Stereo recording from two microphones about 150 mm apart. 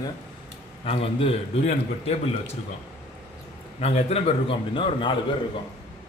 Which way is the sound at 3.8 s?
45° left (ahead or behind).